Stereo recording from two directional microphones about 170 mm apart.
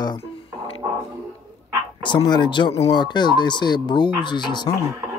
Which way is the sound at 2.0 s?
25° left (ahead or behind).